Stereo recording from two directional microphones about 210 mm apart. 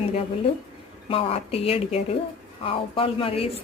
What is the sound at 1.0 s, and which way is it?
A woman's voice, 25° left (ahead or behind).